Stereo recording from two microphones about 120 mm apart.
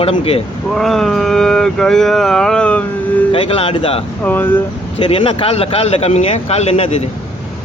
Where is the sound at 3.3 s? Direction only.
50° left (ahead or behind).